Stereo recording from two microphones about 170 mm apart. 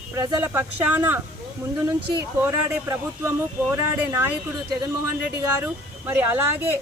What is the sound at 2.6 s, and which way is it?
Speech, 15° right (ahead or behind).